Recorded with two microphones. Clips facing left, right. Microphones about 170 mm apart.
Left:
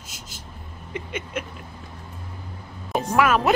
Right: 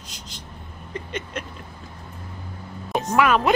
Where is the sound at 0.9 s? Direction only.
10° left (ahead or behind).